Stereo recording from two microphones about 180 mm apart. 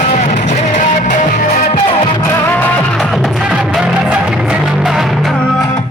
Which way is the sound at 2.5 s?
Centre (ahead or behind).